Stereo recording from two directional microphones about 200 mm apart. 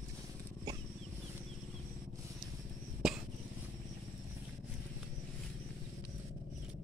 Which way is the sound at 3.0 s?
Centre (ahead or behind).